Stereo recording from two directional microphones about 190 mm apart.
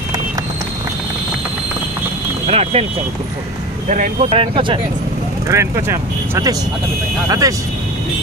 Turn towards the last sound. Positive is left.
turn(degrees=-20)  # may be behind; listen again after turning